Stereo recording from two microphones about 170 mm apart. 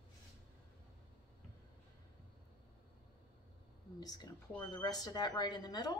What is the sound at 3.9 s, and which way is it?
Speech, 20° left (ahead or behind).